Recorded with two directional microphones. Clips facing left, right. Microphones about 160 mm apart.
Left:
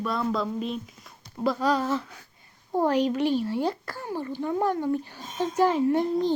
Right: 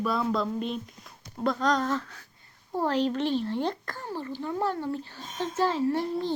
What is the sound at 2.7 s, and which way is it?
Speech, 15° left (ahead or behind).